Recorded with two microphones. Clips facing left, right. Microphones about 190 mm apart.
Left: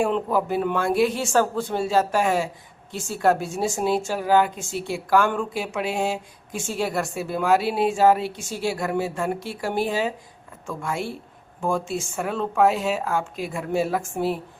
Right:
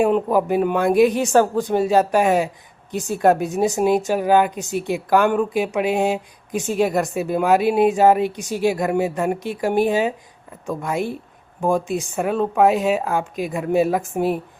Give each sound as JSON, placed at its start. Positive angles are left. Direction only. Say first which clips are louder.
{"t": 0.0, "sound": "a woman's voice", "louder": "right 5 dB", "side_deg": -15}